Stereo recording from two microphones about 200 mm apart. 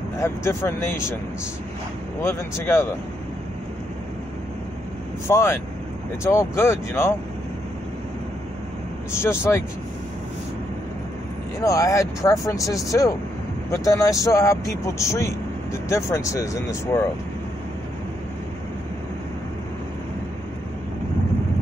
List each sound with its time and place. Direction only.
0.2 s speech: 15° left (ahead or behind)
2.2 s speech: 10° left (ahead or behind)
5.3 s speech: 15° left (ahead or behind)
9.1 s speech: 10° left (ahead or behind)
11.6 s speech: 15° left (ahead or behind)